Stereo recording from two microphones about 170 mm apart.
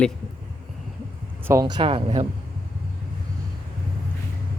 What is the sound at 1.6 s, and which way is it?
Speech, 30° right (ahead or behind).